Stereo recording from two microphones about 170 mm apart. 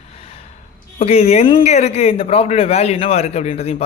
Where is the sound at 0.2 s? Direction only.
35° left (ahead or behind).